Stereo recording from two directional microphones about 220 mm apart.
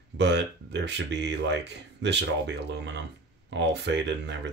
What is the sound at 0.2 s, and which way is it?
Speech, 50° right (ahead or behind).